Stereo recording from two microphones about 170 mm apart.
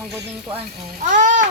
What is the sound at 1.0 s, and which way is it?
Speech, 50° right (ahead or behind).